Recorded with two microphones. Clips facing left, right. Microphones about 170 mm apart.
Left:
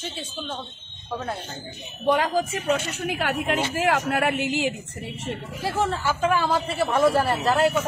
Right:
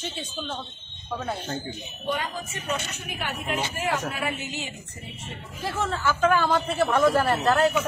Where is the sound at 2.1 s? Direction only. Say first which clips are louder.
Left 9 dB; 85° left.